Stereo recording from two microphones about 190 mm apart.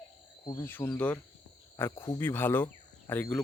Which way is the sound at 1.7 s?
15° left (ahead or behind).